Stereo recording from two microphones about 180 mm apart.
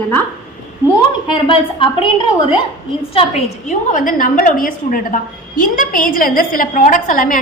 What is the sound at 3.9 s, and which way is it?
A woman's voice, 50° left (ahead or behind).